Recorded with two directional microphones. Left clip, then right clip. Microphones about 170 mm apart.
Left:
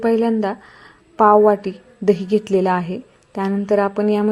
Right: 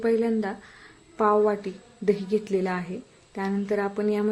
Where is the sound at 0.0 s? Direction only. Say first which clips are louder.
Left 7 dB; 25° left (ahead or behind).